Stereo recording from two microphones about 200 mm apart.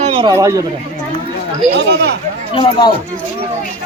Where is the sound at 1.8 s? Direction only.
55° right (ahead or behind).